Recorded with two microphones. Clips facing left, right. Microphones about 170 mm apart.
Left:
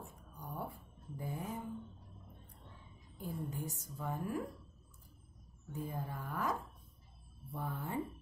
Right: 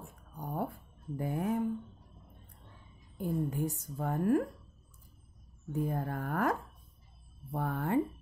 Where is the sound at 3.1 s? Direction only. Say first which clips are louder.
Right 9 dB; 60° right (ahead or behind).